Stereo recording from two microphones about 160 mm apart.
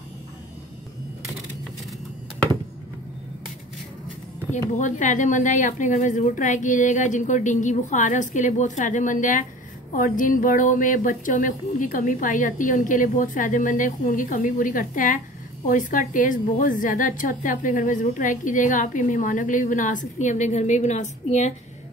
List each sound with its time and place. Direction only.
4.5 s a woman's voice: 50° left (ahead or behind)